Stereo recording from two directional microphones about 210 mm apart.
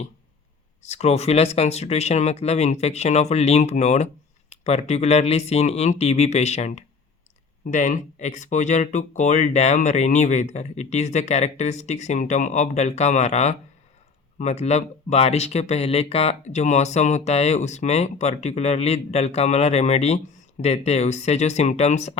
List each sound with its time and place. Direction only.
0.8 s speech: 30° left (ahead or behind)